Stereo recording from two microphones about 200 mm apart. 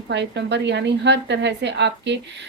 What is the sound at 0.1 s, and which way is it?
A woman's voice, 60° right (ahead or behind).